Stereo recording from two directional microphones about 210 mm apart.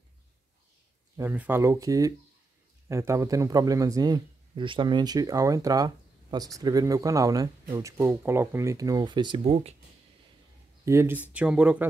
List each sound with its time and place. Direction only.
1.1 s speech: 10° right (ahead or behind); by 9.8 s 30° right (ahead or behind)
10.9 s speech: 10° right (ahead or behind)